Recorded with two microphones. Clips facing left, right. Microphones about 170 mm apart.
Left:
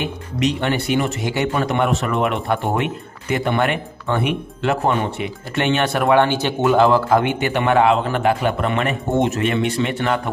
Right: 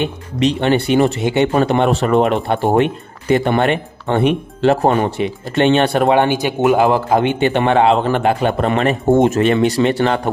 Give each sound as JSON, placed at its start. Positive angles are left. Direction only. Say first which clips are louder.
{"t": 0.0, "sound": "speech", "louder": "right 4 dB", "side_deg": -25}
{"t": 6.1, "sound": "speech", "louder": "right 2 dB", "side_deg": -15}